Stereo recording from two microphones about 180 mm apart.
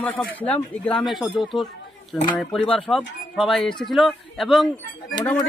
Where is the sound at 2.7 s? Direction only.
5° left (ahead or behind).